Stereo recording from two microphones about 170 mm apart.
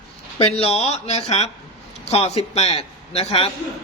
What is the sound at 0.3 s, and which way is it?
A man's voice, 35° left (ahead or behind).